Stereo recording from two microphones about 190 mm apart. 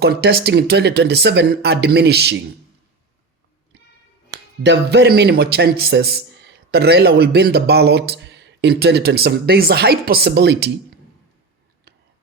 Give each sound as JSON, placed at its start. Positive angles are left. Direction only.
{"t": 0.0, "sound": "a man's voice", "side_deg": -55}
{"t": 4.6, "sound": "a man's voice", "side_deg": -65}